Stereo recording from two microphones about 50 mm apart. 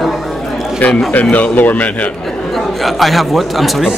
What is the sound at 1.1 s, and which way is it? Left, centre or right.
Speech, left.